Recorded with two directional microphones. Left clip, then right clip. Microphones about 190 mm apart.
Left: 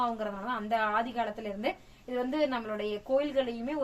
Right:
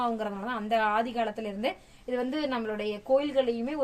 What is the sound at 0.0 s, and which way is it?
Speech, 45° right (ahead or behind).